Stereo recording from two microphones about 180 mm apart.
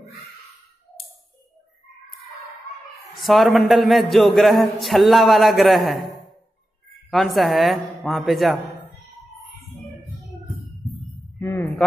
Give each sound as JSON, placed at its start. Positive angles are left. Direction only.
{"t": 3.2, "sound": "a man's voice", "side_deg": 0}
{"t": 11.3, "sound": "speech", "side_deg": 15}